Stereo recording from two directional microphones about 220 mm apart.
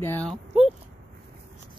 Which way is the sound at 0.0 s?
10° left (ahead or behind).